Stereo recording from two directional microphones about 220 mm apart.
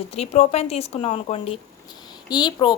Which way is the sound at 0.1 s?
30° left (ahead or behind).